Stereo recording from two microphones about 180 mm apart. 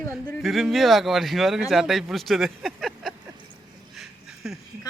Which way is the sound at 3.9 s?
Centre (ahead or behind).